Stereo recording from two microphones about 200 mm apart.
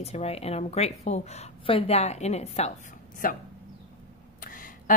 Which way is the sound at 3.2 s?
45° left (ahead or behind).